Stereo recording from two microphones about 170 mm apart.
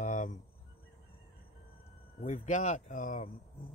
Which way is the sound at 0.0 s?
45° left (ahead or behind).